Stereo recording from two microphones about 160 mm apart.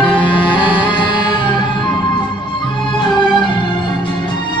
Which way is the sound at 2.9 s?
30° left (ahead or behind).